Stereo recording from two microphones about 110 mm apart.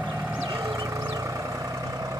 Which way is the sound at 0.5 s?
35° right (ahead or behind).